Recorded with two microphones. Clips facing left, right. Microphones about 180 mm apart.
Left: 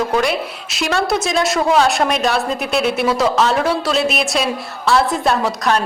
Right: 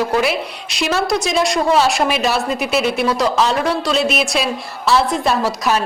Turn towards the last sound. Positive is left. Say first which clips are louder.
# even
turn(degrees=-5)  # may be behind; listen again after turning